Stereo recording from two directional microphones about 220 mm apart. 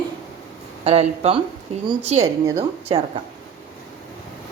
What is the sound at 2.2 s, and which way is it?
Speech, 15° right (ahead or behind).